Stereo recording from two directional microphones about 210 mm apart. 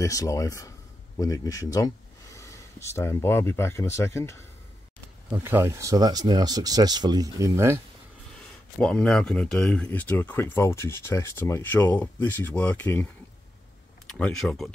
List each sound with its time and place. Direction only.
0.0 s speech: 15° left (ahead or behind)
5.3 s speech: 10° right (ahead or behind)
8.7 s speech: 5° left (ahead or behind)